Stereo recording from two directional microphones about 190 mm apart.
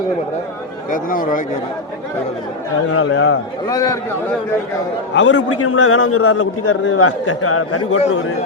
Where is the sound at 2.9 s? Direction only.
75° left (ahead or behind).